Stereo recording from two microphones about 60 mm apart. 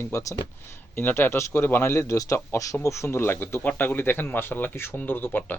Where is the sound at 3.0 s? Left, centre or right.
Left.